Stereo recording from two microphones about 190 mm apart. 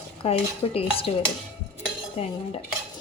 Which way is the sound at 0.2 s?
30° left (ahead or behind).